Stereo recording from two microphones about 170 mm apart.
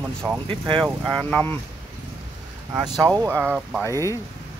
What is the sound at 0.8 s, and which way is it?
Speech, centre (ahead or behind).